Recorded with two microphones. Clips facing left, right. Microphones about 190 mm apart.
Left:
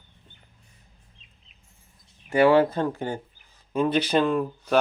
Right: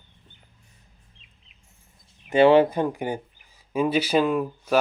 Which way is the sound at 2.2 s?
20° right (ahead or behind).